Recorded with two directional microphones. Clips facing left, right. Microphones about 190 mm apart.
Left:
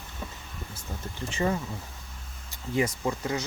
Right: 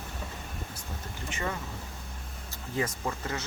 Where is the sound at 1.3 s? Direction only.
30° left (ahead or behind).